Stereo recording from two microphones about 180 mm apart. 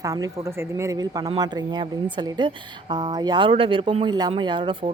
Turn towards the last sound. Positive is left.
turn(degrees=-25)  # may be behind; listen again after turning